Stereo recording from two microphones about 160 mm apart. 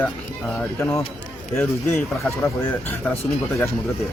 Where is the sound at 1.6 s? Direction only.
15° left (ahead or behind).